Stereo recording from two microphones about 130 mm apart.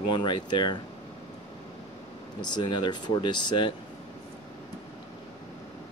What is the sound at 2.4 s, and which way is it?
Speech, 35° left (ahead or behind).